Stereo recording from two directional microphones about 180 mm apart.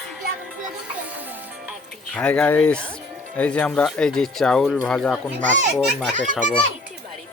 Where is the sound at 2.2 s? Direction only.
5° left (ahead or behind).